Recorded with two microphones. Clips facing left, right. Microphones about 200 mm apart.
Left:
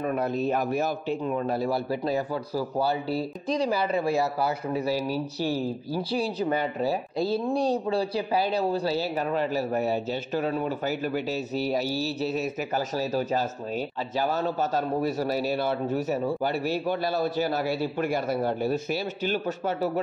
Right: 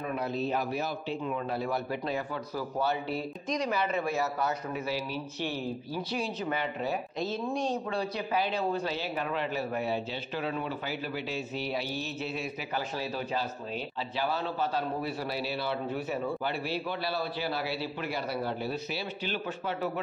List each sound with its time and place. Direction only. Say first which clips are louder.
0.0 s a man's voice: left 5 dB; 50° left (ahead or behind)